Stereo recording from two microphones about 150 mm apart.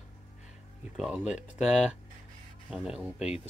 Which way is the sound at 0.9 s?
5° right (ahead or behind).